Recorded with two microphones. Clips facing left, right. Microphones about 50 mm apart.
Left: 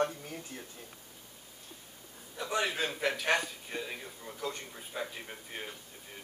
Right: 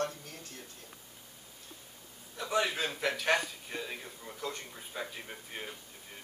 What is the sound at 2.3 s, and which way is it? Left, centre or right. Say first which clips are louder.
A man's voice: right 1 dB; centre.